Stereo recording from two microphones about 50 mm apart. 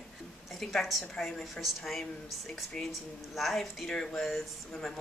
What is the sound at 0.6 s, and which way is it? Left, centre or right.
A woman's voice, centre.